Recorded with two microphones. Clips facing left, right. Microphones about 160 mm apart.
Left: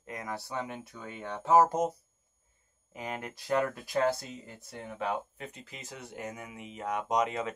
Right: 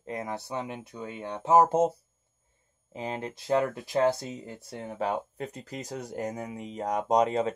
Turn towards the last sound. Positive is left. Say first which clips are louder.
# right 6 dB
turn(degrees=-35)  # may be behind; listen again after turning